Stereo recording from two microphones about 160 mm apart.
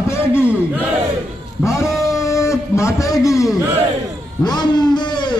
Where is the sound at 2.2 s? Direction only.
20° left (ahead or behind).